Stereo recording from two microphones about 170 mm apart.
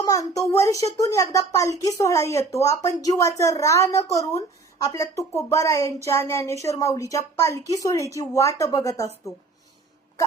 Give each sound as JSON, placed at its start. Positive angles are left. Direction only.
{"t": 0.0, "sound": "a woman's voice", "side_deg": 20}